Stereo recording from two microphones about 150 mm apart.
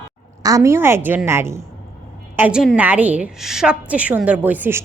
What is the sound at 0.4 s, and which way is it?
A woman's voice, 20° right (ahead or behind).